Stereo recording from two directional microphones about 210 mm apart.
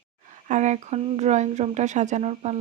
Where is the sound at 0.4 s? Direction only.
35° right (ahead or behind).